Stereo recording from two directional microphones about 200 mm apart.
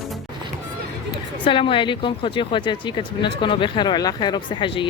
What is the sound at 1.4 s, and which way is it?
Speech, 25° left (ahead or behind).